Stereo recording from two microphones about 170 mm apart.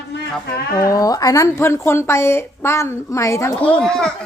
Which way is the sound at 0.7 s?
20° left (ahead or behind).